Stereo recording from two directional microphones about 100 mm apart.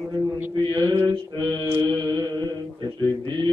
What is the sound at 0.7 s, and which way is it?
Mantra, 40° right (ahead or behind).